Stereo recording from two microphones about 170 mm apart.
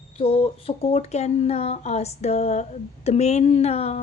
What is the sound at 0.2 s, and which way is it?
Speech, 35° left (ahead or behind).